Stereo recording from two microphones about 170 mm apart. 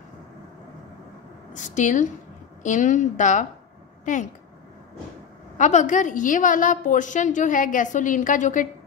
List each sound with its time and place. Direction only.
1.5 s a woman's voice: 45° left (ahead or behind)
5.6 s a woman's voice: 45° left (ahead or behind)